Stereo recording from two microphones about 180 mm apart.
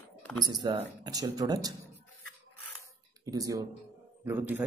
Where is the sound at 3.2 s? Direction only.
20° right (ahead or behind).